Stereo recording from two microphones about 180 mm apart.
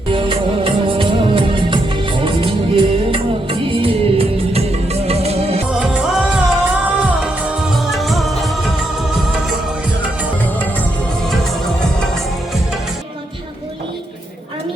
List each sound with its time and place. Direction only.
0.1 s music of bollywood: 30° right (ahead or behind)
2.2 s music: 30° right (ahead or behind)
5.8 s music: 5° right (ahead or behind)